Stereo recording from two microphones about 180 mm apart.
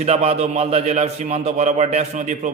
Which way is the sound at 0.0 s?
35° right (ahead or behind).